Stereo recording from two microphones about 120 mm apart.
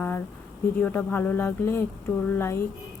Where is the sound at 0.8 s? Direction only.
15° left (ahead or behind).